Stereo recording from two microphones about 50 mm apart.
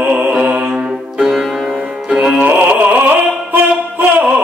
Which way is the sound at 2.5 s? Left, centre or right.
Right.